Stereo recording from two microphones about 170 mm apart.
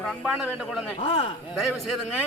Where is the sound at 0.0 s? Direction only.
Centre (ahead or behind).